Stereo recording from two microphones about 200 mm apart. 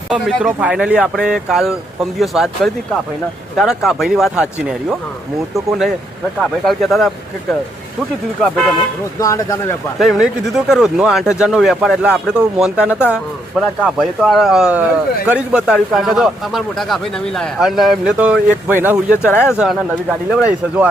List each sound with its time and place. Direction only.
0.1 s a man's voice: 5° right (ahead or behind)
3.6 s a man's voice: centre (ahead or behind)
5.5 s a man's voice: centre (ahead or behind)
9.2 s speech: 15° left (ahead or behind)
10.0 s a man's voice: centre (ahead or behind)